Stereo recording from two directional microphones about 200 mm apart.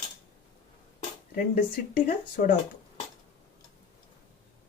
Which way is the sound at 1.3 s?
50° left (ahead or behind).